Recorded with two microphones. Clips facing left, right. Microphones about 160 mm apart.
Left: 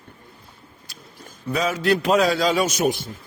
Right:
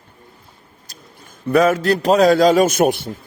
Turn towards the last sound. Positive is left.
turn(degrees=-60)  # may be behind; listen again after turning